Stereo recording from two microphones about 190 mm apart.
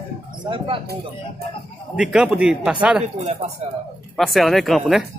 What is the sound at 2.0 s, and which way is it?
A man's voice, 5° right (ahead or behind).